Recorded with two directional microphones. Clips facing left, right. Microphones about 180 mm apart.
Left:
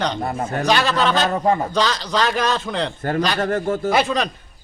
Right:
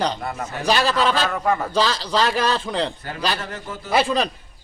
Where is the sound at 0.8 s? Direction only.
35° right (ahead or behind).